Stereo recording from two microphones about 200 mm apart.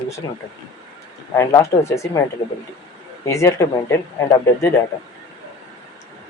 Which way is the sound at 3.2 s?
15° left (ahead or behind).